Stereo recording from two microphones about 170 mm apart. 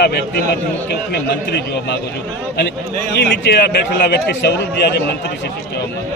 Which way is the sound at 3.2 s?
85° left.